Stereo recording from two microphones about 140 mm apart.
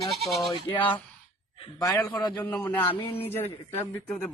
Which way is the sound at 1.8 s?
25° left (ahead or behind).